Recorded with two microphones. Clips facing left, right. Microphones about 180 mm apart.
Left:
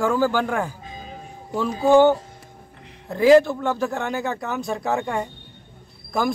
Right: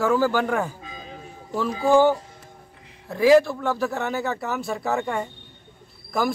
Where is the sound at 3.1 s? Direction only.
Centre (ahead or behind).